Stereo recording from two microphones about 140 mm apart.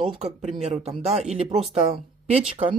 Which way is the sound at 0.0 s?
45° right (ahead or behind).